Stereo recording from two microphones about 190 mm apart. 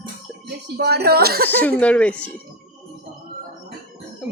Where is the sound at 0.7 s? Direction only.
55° right (ahead or behind).